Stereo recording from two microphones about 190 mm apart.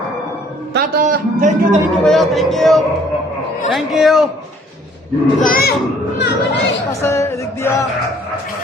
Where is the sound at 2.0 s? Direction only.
Centre (ahead or behind).